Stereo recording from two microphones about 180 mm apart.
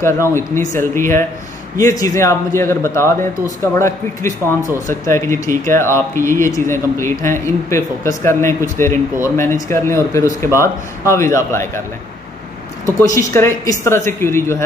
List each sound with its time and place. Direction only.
0.0 s speech: 15° left (ahead or behind)
13.0 s speech: 15° left (ahead or behind)